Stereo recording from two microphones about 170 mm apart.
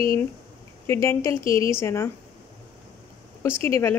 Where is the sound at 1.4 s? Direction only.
30° right (ahead or behind).